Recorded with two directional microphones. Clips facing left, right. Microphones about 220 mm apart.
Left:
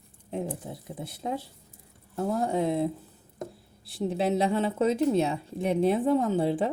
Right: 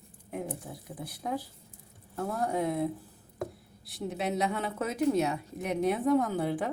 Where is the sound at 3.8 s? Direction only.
30° left (ahead or behind).